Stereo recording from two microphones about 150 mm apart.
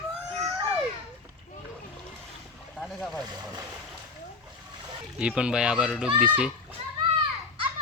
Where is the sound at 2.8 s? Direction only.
Centre (ahead or behind).